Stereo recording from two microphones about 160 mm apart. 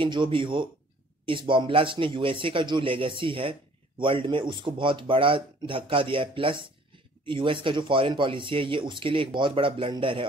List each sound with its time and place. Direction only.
0.0 s speech: 30° right (ahead or behind)